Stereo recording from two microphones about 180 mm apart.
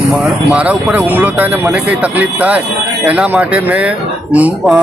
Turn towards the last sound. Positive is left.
turn(degrees=-10)  # may be behind; listen again after turning